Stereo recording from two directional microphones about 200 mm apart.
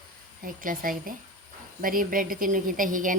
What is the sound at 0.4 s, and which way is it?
A woman's voice, 45° right (ahead or behind).